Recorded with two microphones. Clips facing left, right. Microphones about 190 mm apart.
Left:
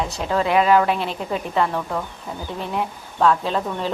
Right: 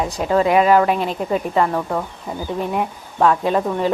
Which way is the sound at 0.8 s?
45° right (ahead or behind).